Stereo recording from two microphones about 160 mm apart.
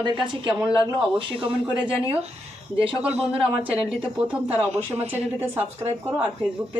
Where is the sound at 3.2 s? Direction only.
5° right (ahead or behind).